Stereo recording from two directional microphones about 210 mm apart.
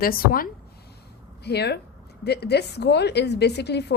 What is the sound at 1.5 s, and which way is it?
A woman's voice, 50° left (ahead or behind).